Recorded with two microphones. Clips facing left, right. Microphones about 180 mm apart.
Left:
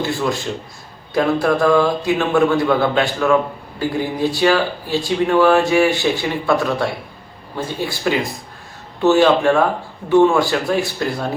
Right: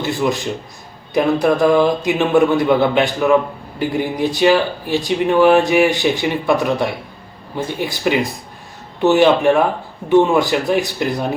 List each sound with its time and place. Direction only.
0.0 s speech: 20° right (ahead or behind)